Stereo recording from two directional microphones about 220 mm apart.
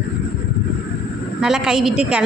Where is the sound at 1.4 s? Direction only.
Centre (ahead or behind).